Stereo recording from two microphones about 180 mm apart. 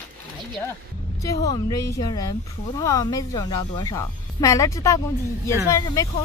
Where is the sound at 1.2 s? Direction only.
20° left (ahead or behind).